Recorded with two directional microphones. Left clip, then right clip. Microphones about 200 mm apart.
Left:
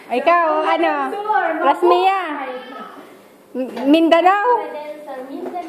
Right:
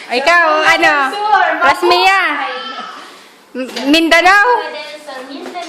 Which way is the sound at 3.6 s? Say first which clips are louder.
Right 2 dB; 10° right (ahead or behind).